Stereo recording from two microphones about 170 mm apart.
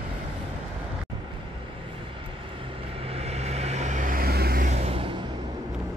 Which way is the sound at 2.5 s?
30° right (ahead or behind).